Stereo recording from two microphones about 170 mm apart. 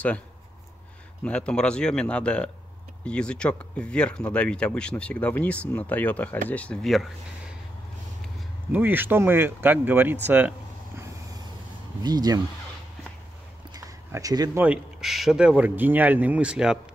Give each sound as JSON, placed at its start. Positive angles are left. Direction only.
{"t": 1.2, "sound": "speech", "side_deg": 5}
{"t": 8.7, "sound": "speech", "side_deg": -10}
{"t": 12.0, "sound": "speech", "side_deg": -25}
{"t": 13.7, "sound": "a sound", "side_deg": -20}
{"t": 14.6, "sound": "speech", "side_deg": -5}